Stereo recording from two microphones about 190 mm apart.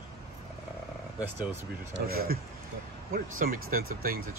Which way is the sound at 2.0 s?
55° right (ahead or behind).